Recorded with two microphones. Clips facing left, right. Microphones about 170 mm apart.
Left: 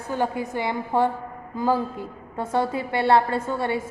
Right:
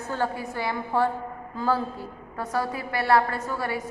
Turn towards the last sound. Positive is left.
turn(degrees=25)  # may be behind; listen again after turning